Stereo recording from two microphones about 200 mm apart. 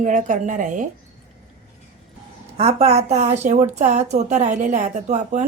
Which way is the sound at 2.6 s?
30° right (ahead or behind).